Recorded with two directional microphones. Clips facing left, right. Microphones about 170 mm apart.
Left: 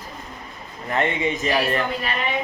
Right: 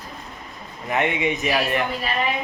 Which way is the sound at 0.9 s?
15° right (ahead or behind).